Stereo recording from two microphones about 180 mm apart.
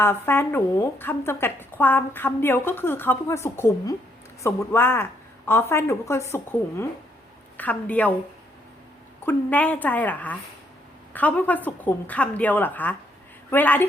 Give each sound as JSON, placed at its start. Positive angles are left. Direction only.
{"t": 0.0, "sound": "a woman's voice", "side_deg": 10}
{"t": 9.2, "sound": "a woman's voice", "side_deg": 10}